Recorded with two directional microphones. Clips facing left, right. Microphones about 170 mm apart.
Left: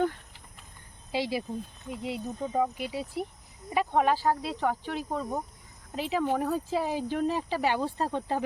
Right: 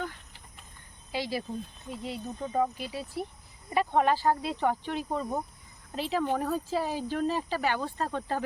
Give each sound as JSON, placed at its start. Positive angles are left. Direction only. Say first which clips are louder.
{"t": 1.1, "sound": "speech", "louder": "left 3 dB", "side_deg": 25}
{"t": 1.9, "sound": "speech", "louder": "left 3 dB", "side_deg": 15}
{"t": 2.7, "sound": "speech", "louder": "left 2 dB", "side_deg": 20}
{"t": 3.7, "sound": "speech", "louder": "even", "side_deg": 5}
{"t": 6.7, "sound": "speech", "louder": "left 1 dB", "side_deg": 15}